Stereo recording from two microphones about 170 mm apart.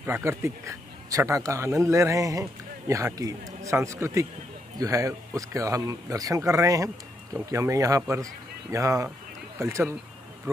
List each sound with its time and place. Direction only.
0.0 s speech: 15° right (ahead or behind)